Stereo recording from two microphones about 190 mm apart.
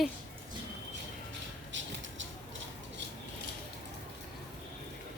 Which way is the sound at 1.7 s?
75° right (ahead or behind).